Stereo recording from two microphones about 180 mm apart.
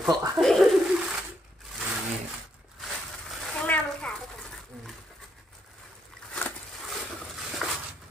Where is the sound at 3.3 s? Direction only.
Centre (ahead or behind).